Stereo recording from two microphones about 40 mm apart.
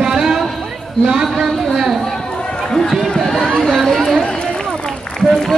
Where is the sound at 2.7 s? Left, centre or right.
Centre.